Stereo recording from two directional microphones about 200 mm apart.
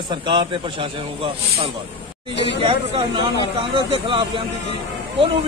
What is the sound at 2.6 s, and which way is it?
A man's voice, 25° right (ahead or behind).